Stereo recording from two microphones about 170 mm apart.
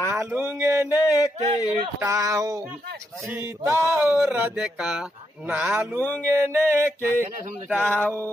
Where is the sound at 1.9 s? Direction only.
15° right (ahead or behind).